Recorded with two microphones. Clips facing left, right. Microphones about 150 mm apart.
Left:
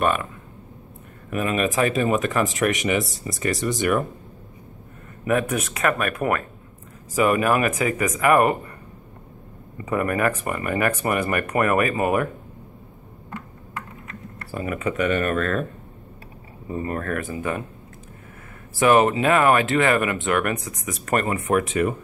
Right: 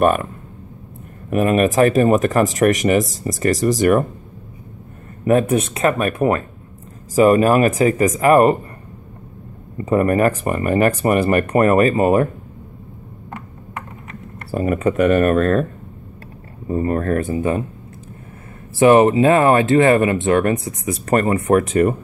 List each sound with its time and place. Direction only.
0.0 s speech: 45° right (ahead or behind)
1.3 s speech: 45° right (ahead or behind)
5.2 s speech: 30° right (ahead or behind)
9.8 s speech: 30° right (ahead or behind)
14.5 s speech: 40° right (ahead or behind)
16.6 s speech: 40° right (ahead or behind)
18.8 s speech: 25° right (ahead or behind); by 21.9 s 40° right (ahead or behind)